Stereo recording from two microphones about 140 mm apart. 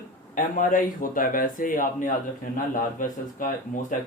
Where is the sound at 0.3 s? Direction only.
70° left (ahead or behind).